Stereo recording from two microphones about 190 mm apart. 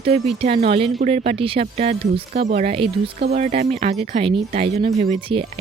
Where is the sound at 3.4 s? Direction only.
35° right (ahead or behind).